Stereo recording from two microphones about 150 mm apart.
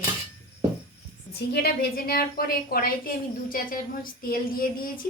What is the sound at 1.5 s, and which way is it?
A woman's voice, 90° left.